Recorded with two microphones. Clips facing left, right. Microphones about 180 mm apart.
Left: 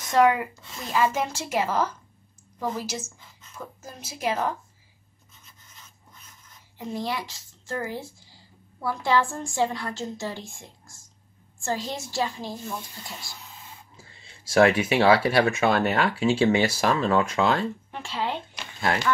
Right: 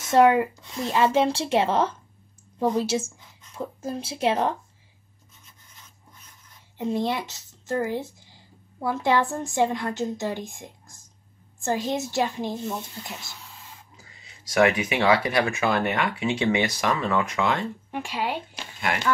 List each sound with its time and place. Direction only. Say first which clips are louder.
0.1 s a woman's voice: right 3 dB; 25° right (ahead or behind)
6.8 s a woman's voice: right 5 dB; 20° right (ahead or behind)
13.9 s a sound: left 1 dB; 30° left (ahead or behind)
15.2 s speech: left 3 dB; 30° left (ahead or behind)
17.9 s a woman's voice: right 4 dB; 15° right (ahead or behind)